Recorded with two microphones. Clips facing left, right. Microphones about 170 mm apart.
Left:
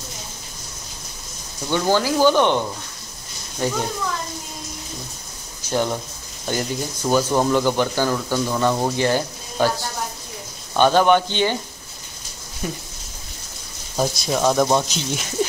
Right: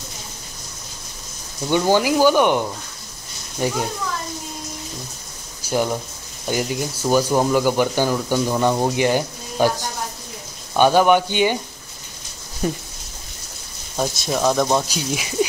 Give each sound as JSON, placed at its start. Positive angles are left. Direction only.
{"t": 1.7, "sound": "speech", "side_deg": -15}
{"t": 5.6, "sound": "speech", "side_deg": -10}
{"t": 12.6, "sound": "speech", "side_deg": -35}
{"t": 13.9, "sound": "speech", "side_deg": 0}